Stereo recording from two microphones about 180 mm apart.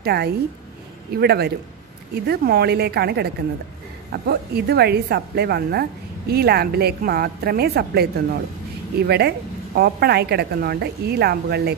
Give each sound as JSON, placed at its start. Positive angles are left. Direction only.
{"t": 0.0, "sound": "a woman's voice", "side_deg": -60}